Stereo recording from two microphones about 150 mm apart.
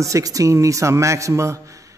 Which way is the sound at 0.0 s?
20° right (ahead or behind).